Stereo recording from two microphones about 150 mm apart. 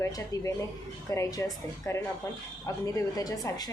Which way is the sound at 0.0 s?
20° left (ahead or behind).